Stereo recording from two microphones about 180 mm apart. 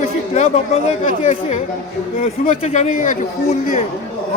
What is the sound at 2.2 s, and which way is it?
A man's voice, 40° left (ahead or behind).